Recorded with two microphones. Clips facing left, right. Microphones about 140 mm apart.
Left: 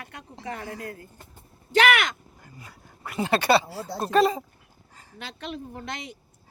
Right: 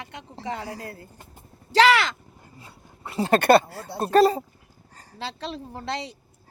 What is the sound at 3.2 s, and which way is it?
Speech, 45° right (ahead or behind).